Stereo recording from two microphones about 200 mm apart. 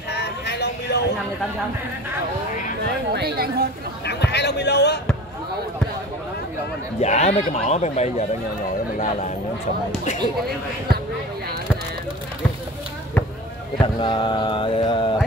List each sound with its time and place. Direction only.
0.1 s a sound: 55° left (ahead or behind)
3.1 s a woman's voice: 50° right (ahead or behind)
4.0 s speech: 55° left (ahead or behind)
7.0 s speech: 35° left (ahead or behind)
13.7 s mantra: 25° left (ahead or behind)